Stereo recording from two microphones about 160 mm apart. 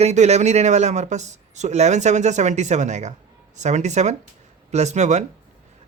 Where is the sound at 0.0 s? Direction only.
45° right (ahead or behind).